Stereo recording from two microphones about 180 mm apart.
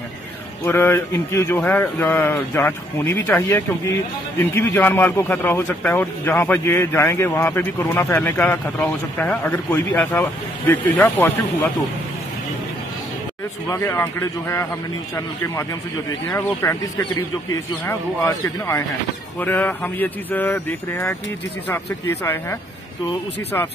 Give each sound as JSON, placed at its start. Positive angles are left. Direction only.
{"t": 0.7, "sound": "a man's voice", "side_deg": 15}
{"t": 13.7, "sound": "a man's voice", "side_deg": 15}
{"t": 16.6, "sound": "a man's voice", "side_deg": 15}
{"t": 17.8, "sound": "a man's voice", "side_deg": 15}